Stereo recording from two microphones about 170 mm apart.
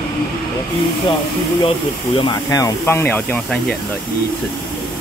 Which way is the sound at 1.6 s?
30° left (ahead or behind).